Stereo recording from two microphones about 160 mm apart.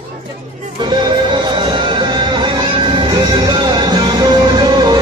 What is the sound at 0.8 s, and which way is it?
Music, 30° right (ahead or behind).